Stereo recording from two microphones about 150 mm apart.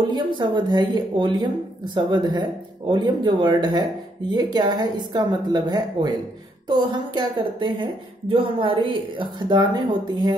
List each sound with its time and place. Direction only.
0.1 s a woman's voice: 30° right (ahead or behind)